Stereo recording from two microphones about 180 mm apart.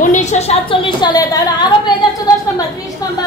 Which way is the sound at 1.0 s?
20° left (ahead or behind).